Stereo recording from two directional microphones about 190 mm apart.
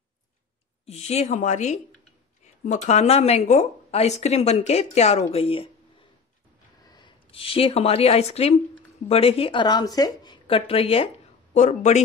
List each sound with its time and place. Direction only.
0.8 s speech: 35° left (ahead or behind)
6.9 s a woman's voice: 25° left (ahead or behind)